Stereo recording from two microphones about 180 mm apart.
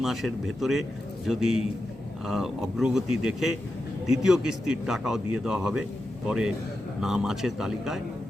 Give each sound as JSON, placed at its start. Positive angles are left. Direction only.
{"t": 0.0, "sound": "speech", "side_deg": 0}